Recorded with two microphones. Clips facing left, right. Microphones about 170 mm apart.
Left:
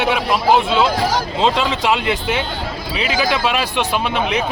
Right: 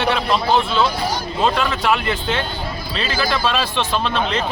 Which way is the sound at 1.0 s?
90° left.